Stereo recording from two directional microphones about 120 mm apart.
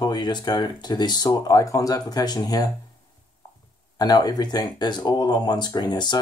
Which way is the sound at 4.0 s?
35° left (ahead or behind).